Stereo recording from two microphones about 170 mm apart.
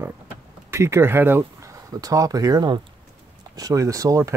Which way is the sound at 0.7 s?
15° right (ahead or behind).